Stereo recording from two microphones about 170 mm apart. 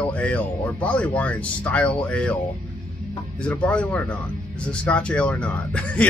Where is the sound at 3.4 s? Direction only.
5° left (ahead or behind).